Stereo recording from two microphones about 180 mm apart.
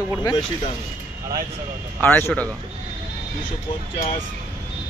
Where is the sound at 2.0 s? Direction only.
10° left (ahead or behind).